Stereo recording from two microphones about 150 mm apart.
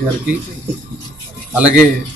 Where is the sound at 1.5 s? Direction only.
5° right (ahead or behind).